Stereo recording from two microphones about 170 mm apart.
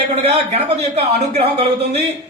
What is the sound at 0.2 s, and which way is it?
A man's voice, 40° right (ahead or behind).